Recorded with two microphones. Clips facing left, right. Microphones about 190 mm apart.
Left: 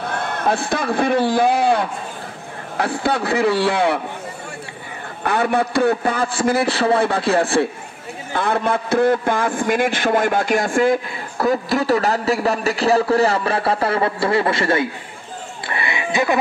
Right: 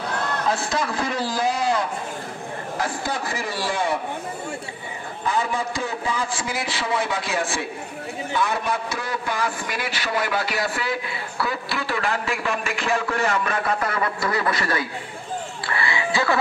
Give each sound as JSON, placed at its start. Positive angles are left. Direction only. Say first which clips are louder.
{"t": 0.0, "sound": "a man's voice", "louder": "left 3 dB", "side_deg": 60}
{"t": 5.2, "sound": "a man's voice", "louder": "left 6 dB", "side_deg": 65}
{"t": 15.6, "sound": "music", "louder": "left 2 dB", "side_deg": 20}